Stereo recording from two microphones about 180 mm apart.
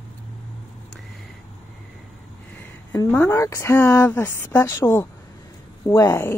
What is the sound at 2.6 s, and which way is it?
Speech, 10° left (ahead or behind).